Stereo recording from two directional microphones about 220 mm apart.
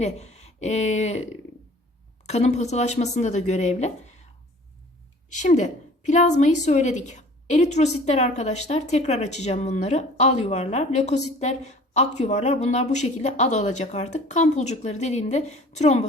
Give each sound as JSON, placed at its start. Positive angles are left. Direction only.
{"t": 0.0, "sound": "speech", "side_deg": 30}
{"t": 2.2, "sound": "a woman's voice", "side_deg": 30}
{"t": 5.3, "sound": "a woman's voice", "side_deg": 35}